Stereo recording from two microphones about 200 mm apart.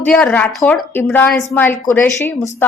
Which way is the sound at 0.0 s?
5° left (ahead or behind).